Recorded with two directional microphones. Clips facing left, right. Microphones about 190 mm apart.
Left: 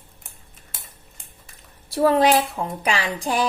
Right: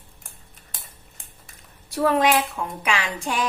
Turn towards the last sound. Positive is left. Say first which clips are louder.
# left 3 dB
turn(degrees=35)  # may be behind; listen again after turning